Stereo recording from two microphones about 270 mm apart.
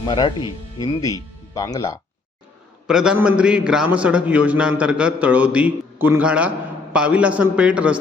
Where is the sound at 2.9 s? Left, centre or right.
Centre.